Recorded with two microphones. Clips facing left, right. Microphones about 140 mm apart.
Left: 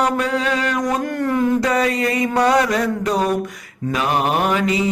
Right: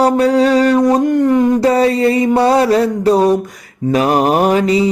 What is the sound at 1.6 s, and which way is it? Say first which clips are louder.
Mantra: right 7 dB; 30° right (ahead or behind).